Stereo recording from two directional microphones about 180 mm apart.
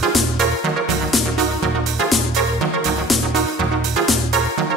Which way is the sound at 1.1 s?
Centre (ahead or behind).